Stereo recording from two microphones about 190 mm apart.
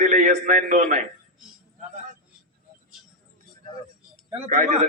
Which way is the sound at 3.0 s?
Centre (ahead or behind).